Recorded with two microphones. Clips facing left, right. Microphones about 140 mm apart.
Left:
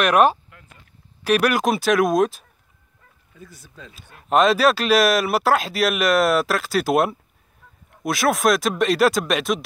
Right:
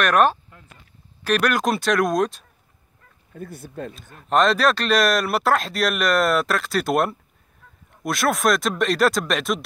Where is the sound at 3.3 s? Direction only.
55° right (ahead or behind).